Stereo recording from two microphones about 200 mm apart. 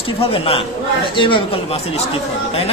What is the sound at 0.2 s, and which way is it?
A man's voice, 25° left (ahead or behind).